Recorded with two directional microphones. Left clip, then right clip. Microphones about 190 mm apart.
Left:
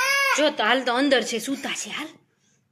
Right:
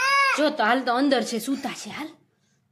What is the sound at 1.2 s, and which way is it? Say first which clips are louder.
Speech: left 1 dB; 25° right (ahead or behind).